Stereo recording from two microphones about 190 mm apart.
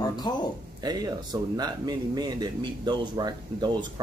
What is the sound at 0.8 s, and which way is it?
Speech, 20° right (ahead or behind).